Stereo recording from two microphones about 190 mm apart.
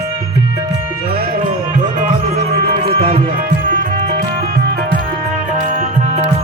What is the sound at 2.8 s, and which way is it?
Music, 30° right (ahead or behind).